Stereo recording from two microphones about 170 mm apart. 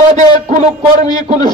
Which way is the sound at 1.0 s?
25° left (ahead or behind).